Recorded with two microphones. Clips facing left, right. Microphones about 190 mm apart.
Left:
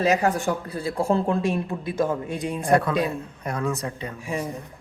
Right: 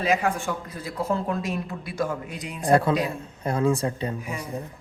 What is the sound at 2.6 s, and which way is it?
Speech, 25° right (ahead or behind).